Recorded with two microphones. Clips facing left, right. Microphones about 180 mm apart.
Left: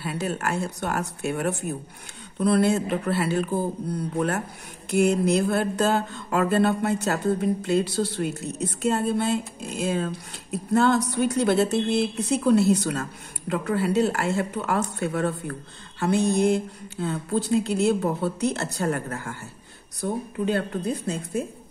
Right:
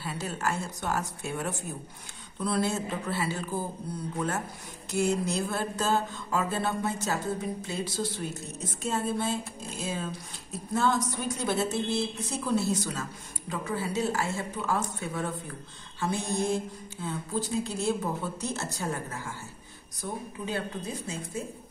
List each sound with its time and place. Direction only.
0.0 s mantra: 65° left (ahead or behind)
13.5 s speech: 65° left (ahead or behind)
20.0 s mantra: 65° left (ahead or behind)